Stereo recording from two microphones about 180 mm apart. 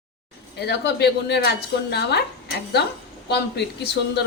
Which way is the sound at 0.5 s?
65° left (ahead or behind).